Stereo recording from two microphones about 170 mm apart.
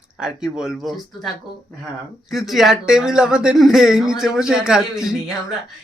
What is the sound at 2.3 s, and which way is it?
Speech, centre (ahead or behind).